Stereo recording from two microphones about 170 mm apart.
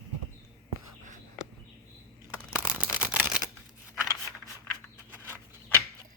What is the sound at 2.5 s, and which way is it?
Camera, 10° right (ahead or behind).